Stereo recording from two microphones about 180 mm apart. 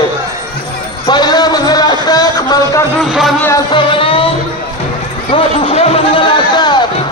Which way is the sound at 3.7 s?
30° left (ahead or behind).